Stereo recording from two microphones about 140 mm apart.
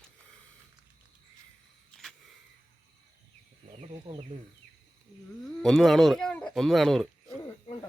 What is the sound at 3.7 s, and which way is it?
Speech, 45° right (ahead or behind).